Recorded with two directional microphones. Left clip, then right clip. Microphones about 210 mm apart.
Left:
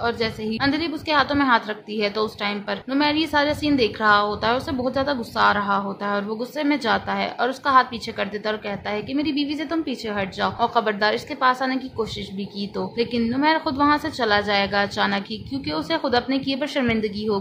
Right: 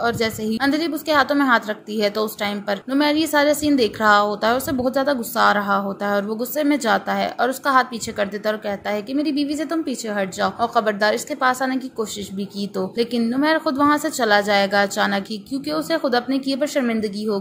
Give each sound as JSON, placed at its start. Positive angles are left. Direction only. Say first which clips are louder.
{"t": 0.0, "sound": "a woman's voice", "louder": "right 3 dB", "side_deg": -20}